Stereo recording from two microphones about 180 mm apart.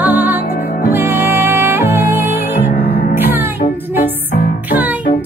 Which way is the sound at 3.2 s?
10° right (ahead or behind).